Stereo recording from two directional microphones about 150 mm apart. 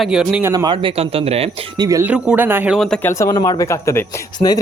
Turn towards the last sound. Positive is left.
turn(degrees=25)  # may be behind; listen again after turning